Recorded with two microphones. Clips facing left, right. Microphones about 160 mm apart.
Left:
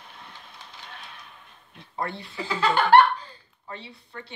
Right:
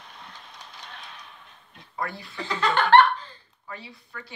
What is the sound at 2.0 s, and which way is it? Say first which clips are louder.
Speech: left 1 dB; 25° left (ahead or behind).